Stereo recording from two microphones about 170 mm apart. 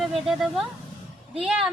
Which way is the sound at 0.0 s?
Centre (ahead or behind).